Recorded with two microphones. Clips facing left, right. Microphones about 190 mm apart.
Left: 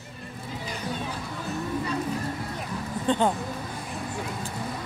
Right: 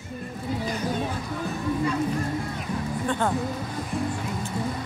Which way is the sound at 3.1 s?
20° left (ahead or behind).